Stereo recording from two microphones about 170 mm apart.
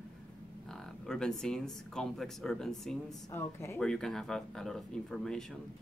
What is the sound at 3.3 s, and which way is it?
Speech, 15° left (ahead or behind).